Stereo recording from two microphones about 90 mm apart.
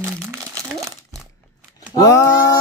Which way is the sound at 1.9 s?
40° left (ahead or behind).